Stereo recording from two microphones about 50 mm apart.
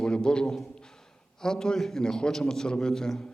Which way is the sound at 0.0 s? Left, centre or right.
Centre.